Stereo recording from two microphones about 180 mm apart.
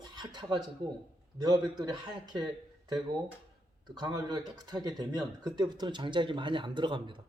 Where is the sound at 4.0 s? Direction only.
25° right (ahead or behind).